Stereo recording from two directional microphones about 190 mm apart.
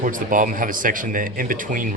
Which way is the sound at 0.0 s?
45° right (ahead or behind).